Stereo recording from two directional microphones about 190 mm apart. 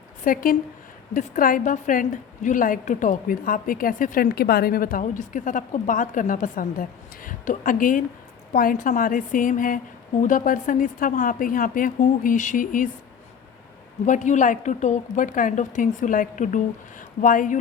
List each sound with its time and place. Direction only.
0.3 s a woman's voice: 45° left (ahead or behind)
14.0 s a woman's voice: 40° left (ahead or behind)